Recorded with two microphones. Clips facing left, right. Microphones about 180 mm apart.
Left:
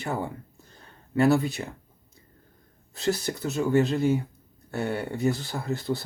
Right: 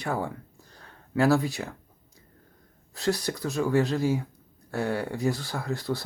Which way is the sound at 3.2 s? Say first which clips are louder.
Even; 25° left (ahead or behind).